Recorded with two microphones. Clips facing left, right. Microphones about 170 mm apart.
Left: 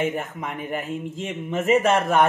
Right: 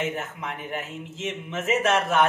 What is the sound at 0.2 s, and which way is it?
Speech, 50° left (ahead or behind).